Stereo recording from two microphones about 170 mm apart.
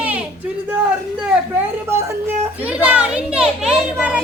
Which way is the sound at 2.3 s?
10° right (ahead or behind).